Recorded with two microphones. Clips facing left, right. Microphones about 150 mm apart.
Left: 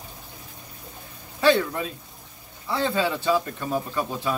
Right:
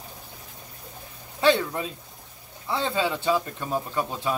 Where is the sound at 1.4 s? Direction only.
25° right (ahead or behind).